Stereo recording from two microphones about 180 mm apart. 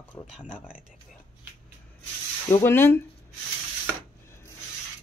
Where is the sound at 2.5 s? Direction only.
15° left (ahead or behind).